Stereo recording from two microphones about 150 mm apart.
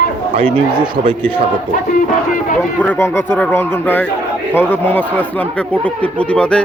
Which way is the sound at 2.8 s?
15° left (ahead or behind).